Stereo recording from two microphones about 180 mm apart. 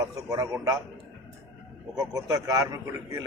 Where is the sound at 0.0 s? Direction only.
15° right (ahead or behind).